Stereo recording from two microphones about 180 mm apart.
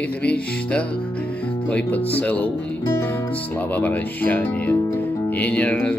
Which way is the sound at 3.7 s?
10° left (ahead or behind).